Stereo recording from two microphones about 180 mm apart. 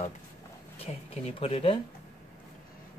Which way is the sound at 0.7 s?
35° left (ahead or behind).